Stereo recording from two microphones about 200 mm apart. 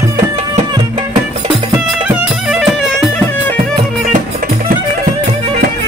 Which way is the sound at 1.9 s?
5° right (ahead or behind).